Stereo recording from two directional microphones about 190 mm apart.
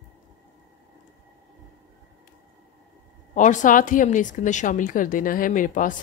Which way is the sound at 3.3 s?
40° left (ahead or behind).